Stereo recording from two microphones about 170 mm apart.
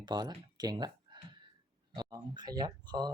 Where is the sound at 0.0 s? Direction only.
25° right (ahead or behind).